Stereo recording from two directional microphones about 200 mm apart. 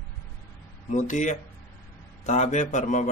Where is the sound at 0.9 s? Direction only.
40° left (ahead or behind).